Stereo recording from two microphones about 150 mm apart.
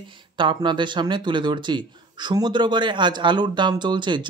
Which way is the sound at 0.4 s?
30° right (ahead or behind).